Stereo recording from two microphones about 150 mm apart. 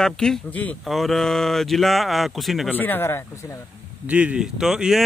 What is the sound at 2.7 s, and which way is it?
Speech, 10° left (ahead or behind).